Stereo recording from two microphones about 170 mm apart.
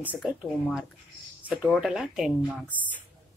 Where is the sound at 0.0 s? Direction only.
5° right (ahead or behind).